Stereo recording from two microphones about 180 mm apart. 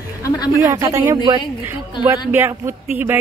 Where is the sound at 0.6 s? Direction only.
15° right (ahead or behind).